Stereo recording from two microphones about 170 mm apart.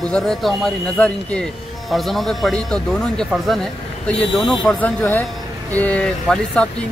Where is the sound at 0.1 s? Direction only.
Centre (ahead or behind).